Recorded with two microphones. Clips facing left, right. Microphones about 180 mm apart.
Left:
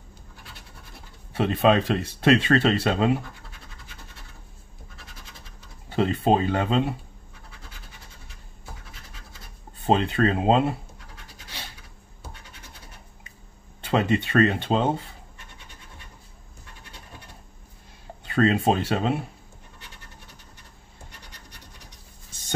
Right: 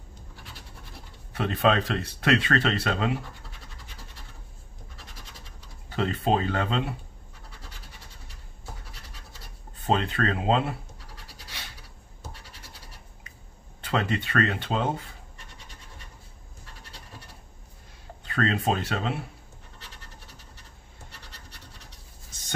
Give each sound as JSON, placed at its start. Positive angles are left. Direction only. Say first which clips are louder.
{"t": 1.3, "sound": "speech", "louder": "left 4 dB", "side_deg": 25}
{"t": 5.9, "sound": "speech", "louder": "left 4 dB", "side_deg": 20}
{"t": 9.8, "sound": "speech", "louder": "left 4 dB", "side_deg": 20}
{"t": 13.7, "sound": "speech", "louder": "left 5 dB", "side_deg": 25}
{"t": 18.2, "sound": "speech", "louder": "left 5 dB", "side_deg": 20}